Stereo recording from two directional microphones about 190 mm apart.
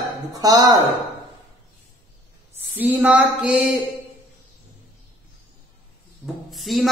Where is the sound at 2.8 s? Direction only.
5° right (ahead or behind).